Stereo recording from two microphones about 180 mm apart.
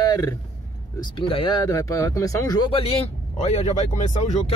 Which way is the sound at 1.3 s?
25° left (ahead or behind).